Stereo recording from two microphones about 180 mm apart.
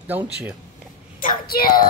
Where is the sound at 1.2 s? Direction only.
55° left (ahead or behind).